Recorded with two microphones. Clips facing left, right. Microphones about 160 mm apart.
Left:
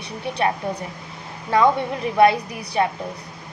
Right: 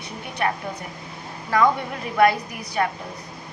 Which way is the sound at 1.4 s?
25° left (ahead or behind).